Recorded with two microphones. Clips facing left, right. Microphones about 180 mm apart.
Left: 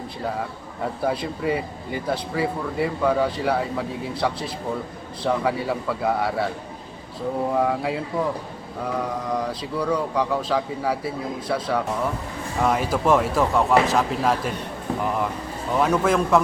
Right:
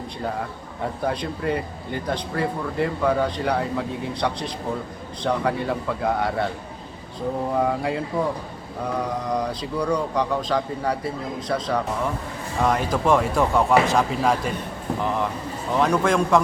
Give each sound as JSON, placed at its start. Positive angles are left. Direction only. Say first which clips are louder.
{"t": 1.0, "sound": "speech", "louder": "left 1 dB", "side_deg": 5}
{"t": 7.5, "sound": "speech", "louder": "right 1 dB", "side_deg": 0}
{"t": 9.3, "sound": "speech", "louder": "right 1 dB", "side_deg": 5}
{"t": 15.7, "sound": "speech", "louder": "even", "side_deg": 5}